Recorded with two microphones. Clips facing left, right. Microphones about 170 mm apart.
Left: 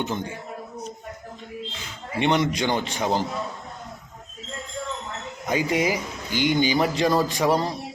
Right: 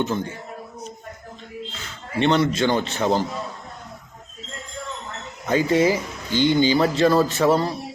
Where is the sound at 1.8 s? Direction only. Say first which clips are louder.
Right 3 dB; 15° left (ahead or behind).